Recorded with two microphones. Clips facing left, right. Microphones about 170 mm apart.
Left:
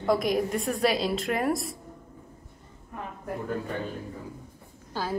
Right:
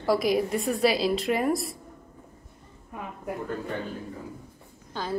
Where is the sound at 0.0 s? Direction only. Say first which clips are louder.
Right 1 dB; 5° right (ahead or behind).